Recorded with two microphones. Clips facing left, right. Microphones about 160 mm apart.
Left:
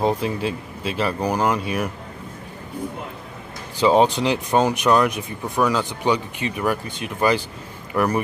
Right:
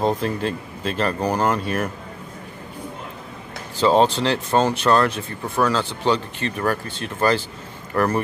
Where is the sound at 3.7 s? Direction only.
10° left (ahead or behind).